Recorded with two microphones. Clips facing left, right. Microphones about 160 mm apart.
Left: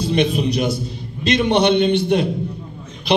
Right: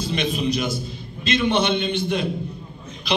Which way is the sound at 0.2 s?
60° left (ahead or behind).